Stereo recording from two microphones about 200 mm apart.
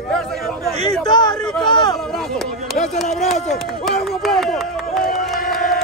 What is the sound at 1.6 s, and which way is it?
Speech, 20° left (ahead or behind).